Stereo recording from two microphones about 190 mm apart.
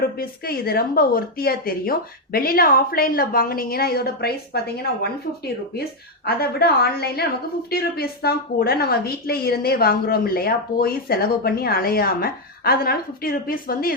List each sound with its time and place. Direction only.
0.2 s a woman's voice: 50° left (ahead or behind)
6.2 s a woman's voice: 55° left (ahead or behind)